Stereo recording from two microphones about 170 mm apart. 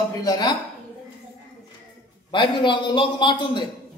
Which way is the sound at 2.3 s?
30° left (ahead or behind).